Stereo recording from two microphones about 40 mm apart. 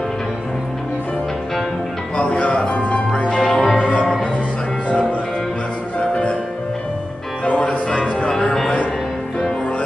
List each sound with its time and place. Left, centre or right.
2.1 s music: left
3.1 s music: left
3.7 s music: left
5.9 s music: left
7.4 s music: left